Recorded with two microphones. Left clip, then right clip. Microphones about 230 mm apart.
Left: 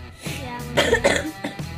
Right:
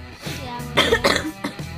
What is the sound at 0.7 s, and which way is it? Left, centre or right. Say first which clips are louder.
Music: right 1 dB; right.